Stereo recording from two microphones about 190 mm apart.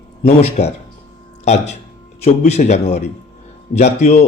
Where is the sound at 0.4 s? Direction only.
35° left (ahead or behind).